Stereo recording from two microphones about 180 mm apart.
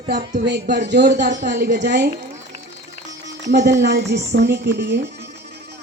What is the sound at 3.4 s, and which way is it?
A woman's voice, 70° right (ahead or behind).